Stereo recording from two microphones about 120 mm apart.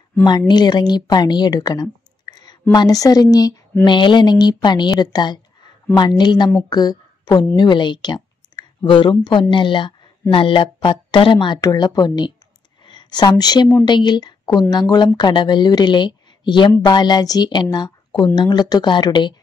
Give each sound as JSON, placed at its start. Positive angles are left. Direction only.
{"t": 0.5, "sound": "speech", "side_deg": 35}